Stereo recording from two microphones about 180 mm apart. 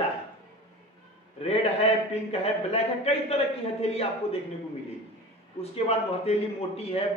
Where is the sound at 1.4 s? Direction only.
35° left (ahead or behind).